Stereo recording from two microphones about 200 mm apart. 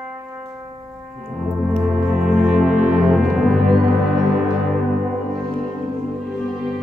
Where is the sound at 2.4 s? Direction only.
Centre (ahead or behind).